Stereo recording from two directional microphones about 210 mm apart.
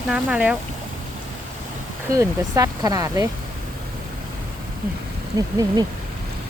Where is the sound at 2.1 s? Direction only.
15° right (ahead or behind).